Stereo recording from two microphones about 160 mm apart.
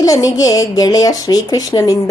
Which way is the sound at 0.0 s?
20° left (ahead or behind).